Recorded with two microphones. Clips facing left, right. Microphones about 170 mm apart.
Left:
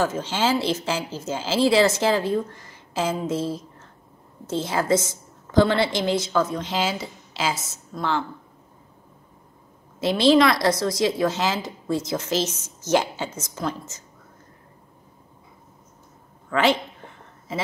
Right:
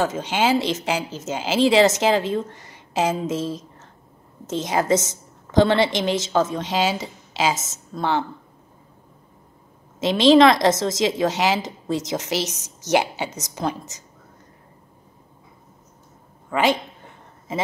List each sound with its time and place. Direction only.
0.1 s a woman's voice: 15° right (ahead or behind)
9.9 s a woman's voice: 20° right (ahead or behind)
16.4 s a woman's voice: 15° right (ahead or behind)